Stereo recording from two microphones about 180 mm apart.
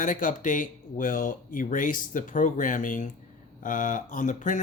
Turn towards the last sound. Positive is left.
turn(degrees=45)  # may be behind; listen again after turning